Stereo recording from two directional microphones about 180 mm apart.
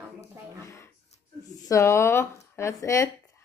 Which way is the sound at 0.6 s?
15° left (ahead or behind).